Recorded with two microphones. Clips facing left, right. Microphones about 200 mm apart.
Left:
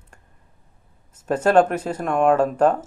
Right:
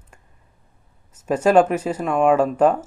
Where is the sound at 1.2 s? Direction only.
10° right (ahead or behind).